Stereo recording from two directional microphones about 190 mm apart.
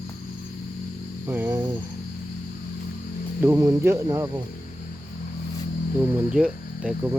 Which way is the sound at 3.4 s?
15° right (ahead or behind).